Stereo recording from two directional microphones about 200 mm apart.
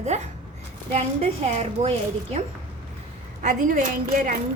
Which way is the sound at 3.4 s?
40° right (ahead or behind).